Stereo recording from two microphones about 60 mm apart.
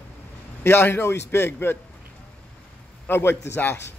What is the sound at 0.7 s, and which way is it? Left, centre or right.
A man's voice, left.